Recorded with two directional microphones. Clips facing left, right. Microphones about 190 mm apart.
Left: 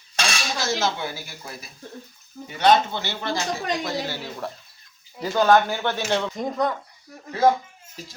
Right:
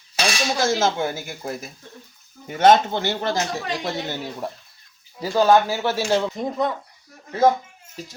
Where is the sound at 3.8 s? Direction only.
20° right (ahead or behind); by 6.7 s centre (ahead or behind).